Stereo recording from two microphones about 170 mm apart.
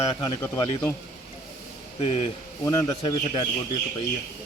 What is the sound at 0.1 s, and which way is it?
Speech, 25° left (ahead or behind).